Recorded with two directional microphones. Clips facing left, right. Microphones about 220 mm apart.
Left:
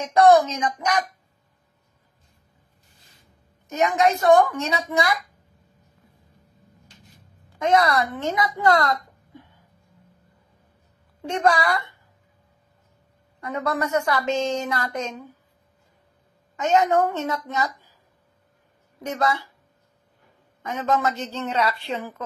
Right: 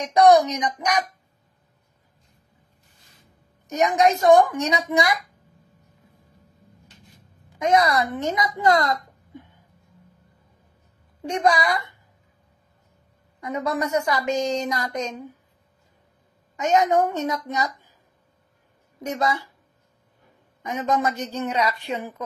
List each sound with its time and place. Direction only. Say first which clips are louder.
0.0 s a woman's voice: even; 15° right (ahead or behind)
3.7 s a woman's voice: right 1 dB; 15° right (ahead or behind)
7.5 s speech: even; 15° right (ahead or behind)
11.2 s a woman's voice: even; 15° right (ahead or behind)
13.4 s a woman's voice: even; 15° right (ahead or behind)
16.5 s a woman's voice: even; 15° right (ahead or behind)
19.0 s a woman's voice: even; 20° right (ahead or behind)
20.6 s a woman's voice: even; 20° right (ahead or behind)